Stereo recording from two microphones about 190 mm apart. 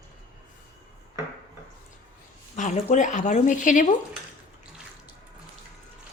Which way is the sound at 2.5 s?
40° left (ahead or behind).